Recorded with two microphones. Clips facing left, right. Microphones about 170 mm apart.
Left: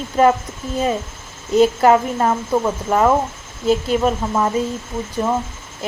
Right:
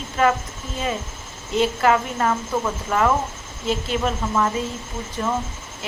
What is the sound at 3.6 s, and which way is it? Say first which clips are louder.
Speech: left 7 dB; 40° left (ahead or behind).